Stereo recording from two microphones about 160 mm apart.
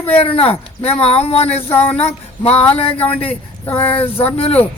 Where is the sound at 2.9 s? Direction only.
10° left (ahead or behind).